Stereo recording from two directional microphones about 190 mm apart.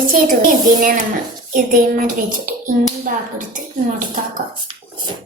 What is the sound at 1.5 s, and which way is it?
A woman's voice, 45° right (ahead or behind).